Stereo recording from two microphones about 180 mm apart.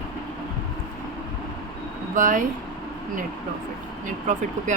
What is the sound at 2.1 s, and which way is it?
Speech, 45° right (ahead or behind).